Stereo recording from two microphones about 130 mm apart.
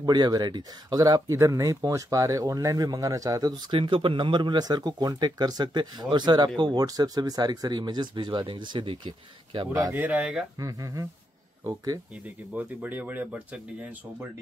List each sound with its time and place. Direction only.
0.0 s speech: 30° right (ahead or behind)
3.7 s speech: 40° right (ahead or behind)
9.9 s speech: 15° right (ahead or behind)
10.6 s speech: 25° right (ahead or behind)
12.5 s speech: 15° right (ahead or behind)